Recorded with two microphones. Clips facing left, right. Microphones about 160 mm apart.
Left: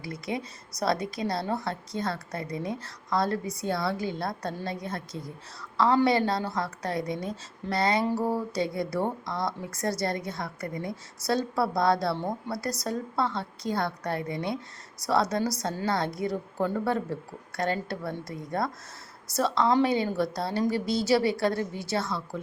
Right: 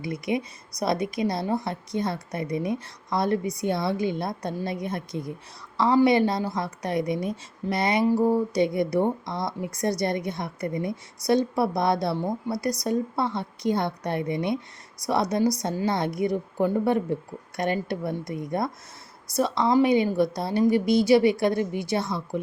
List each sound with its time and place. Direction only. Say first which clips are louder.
0.0 s a woman's voice: right 6 dB; 20° right (ahead or behind)